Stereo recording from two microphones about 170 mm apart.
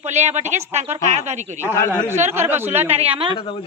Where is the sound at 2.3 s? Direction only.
15° right (ahead or behind).